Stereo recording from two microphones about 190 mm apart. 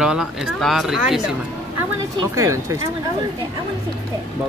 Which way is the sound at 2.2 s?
15° right (ahead or behind).